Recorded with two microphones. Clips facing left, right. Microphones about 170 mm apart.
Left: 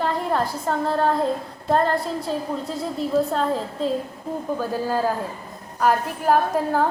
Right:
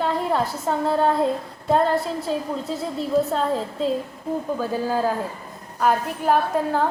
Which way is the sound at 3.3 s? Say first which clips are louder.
Even; centre (ahead or behind).